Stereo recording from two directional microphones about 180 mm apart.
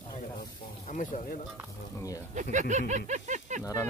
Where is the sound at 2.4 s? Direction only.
45° right (ahead or behind).